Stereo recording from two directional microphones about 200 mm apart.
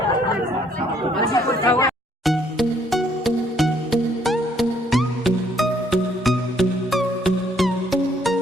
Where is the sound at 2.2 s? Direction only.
Centre (ahead or behind).